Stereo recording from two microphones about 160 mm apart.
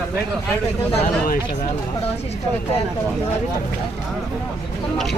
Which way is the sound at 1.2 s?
60° left (ahead or behind).